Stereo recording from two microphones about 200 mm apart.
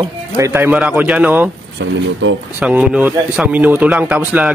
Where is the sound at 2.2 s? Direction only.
70° right (ahead or behind).